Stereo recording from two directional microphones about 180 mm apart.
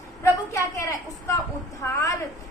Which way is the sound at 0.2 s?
15° left (ahead or behind).